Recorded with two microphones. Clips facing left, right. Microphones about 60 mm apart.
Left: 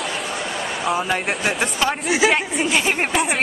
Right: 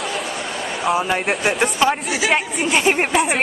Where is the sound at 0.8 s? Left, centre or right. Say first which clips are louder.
Right 3 dB; centre.